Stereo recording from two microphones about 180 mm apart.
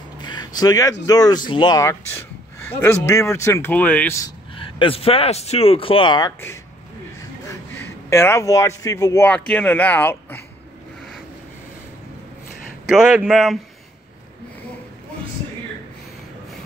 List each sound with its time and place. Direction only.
0.2 s a sound: 25° left (ahead or behind)
1.0 s speech: 20° left (ahead or behind)
4.6 s a man's voice: 30° left (ahead or behind)
7.8 s speech: 15° left (ahead or behind)
12.8 s speech: 5° right (ahead or behind)